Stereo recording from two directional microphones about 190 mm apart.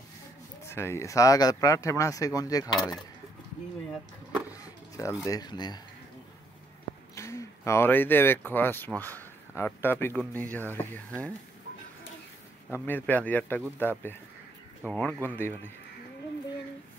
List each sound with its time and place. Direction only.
0.7 s speech: 15° left (ahead or behind)
4.6 s a sound: 15° left (ahead or behind)
5.2 s speech: 20° left (ahead or behind)
7.2 s speech: 15° left (ahead or behind)
12.8 s speech: 10° left (ahead or behind)